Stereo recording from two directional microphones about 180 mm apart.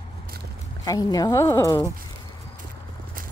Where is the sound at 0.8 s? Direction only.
20° left (ahead or behind).